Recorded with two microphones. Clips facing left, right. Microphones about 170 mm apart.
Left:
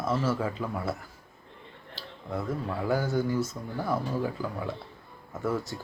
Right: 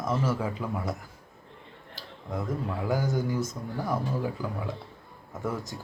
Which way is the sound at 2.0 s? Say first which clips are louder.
Even; 15° right (ahead or behind).